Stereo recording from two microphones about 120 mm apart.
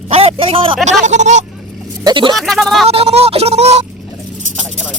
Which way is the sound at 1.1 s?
80° right.